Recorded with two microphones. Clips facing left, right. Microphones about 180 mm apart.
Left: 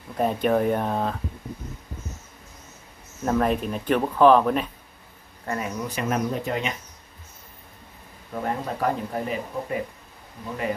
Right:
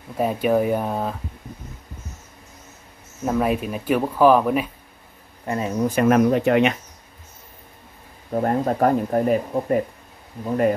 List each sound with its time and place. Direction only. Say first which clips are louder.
0.1 s speech: right 2 dB; 5° right (ahead or behind)
3.3 s speech: right 1 dB; 5° right (ahead or behind)
5.4 s speech: right 4 dB; 20° right (ahead or behind)
5.8 s speech: right 10 dB; 50° right (ahead or behind)
6.0 s speech: right 9 dB; 70° right (ahead or behind)
8.3 s speech: right 8 dB; 45° right (ahead or behind)